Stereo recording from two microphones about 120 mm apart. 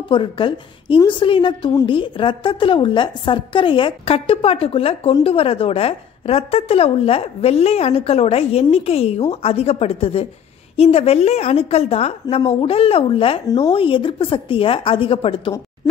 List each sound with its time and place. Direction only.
0.1 s a woman's voice: 45° left (ahead or behind)